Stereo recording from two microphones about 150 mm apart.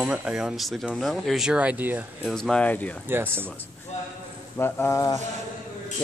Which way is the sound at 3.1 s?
15° right (ahead or behind).